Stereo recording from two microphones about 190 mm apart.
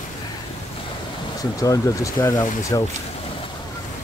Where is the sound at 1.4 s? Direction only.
20° left (ahead or behind).